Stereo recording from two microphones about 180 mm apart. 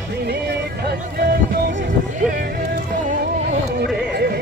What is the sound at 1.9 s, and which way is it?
Music, 50° right (ahead or behind).